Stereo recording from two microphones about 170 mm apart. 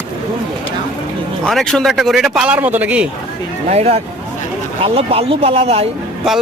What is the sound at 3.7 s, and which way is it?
Speech, 40° right (ahead or behind).